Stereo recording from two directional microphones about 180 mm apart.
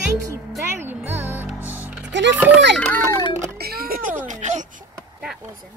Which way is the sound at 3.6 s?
55° right (ahead or behind).